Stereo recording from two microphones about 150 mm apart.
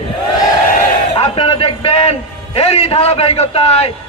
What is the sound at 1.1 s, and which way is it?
A man's voice, 35° left (ahead or behind).